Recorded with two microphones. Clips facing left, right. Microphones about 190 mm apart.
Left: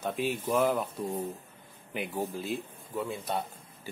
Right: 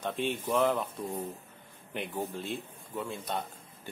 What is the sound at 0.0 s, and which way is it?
A man's voice, 5° left (ahead or behind).